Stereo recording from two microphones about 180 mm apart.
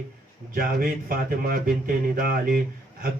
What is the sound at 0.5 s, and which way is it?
Speech, 55° right (ahead or behind).